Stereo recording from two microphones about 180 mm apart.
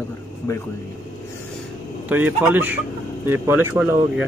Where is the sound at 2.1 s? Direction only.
10° right (ahead or behind).